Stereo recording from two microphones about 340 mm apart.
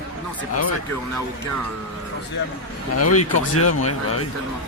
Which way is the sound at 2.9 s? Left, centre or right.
Left.